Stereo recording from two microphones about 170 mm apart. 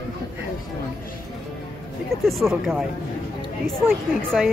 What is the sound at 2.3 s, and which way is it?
Speech, centre (ahead or behind).